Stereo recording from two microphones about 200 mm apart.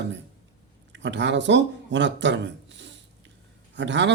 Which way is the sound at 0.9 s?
65° right (ahead or behind).